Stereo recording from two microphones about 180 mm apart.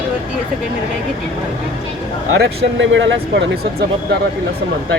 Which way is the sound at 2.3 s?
90° right.